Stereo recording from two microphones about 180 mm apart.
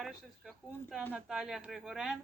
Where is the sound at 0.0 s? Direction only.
Centre (ahead or behind).